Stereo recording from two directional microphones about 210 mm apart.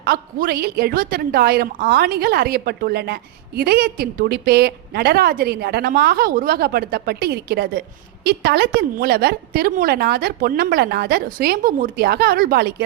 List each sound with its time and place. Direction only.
0.0 s a woman's voice: 45° right (ahead or behind)